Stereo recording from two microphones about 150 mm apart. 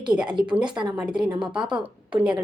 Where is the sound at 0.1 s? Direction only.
5° right (ahead or behind).